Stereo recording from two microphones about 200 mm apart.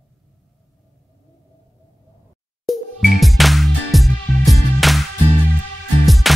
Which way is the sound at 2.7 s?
Centre (ahead or behind).